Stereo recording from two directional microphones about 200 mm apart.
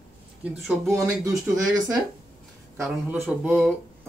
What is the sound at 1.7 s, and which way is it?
Speech, 20° right (ahead or behind).